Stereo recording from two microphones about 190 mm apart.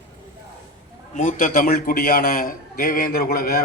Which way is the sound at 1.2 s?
40° left (ahead or behind).